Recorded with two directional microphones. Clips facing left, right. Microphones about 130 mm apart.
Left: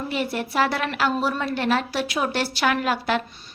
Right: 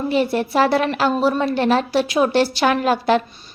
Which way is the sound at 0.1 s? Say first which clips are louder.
Right 9 dB; 30° right (ahead or behind).